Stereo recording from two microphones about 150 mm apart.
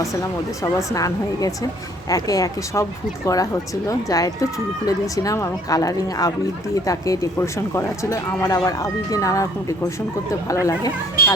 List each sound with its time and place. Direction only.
0.0 s speech: 20° left (ahead or behind)